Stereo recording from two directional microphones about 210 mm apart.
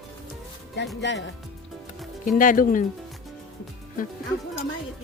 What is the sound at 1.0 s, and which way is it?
Speech, 60° left (ahead or behind).